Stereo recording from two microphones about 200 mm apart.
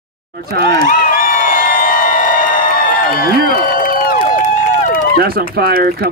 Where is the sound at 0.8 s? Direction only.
40° left (ahead or behind).